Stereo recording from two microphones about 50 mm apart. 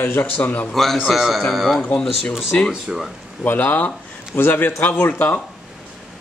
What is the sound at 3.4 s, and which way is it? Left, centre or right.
A man's voice, left.